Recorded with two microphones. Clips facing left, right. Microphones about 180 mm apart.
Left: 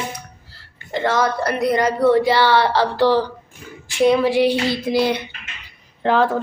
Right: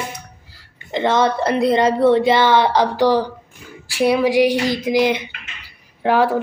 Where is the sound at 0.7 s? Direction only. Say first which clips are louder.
Right 2 dB; 20° right (ahead or behind).